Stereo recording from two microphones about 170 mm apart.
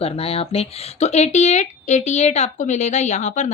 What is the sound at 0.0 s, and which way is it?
Speech, 35° left (ahead or behind).